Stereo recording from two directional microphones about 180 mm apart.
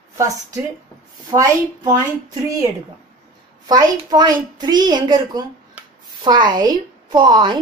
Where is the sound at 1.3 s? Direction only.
20° right (ahead or behind).